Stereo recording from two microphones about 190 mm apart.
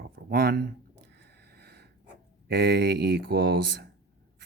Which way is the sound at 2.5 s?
60° right (ahead or behind).